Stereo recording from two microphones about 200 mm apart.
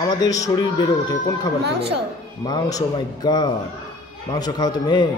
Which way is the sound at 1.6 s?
55° right (ahead or behind).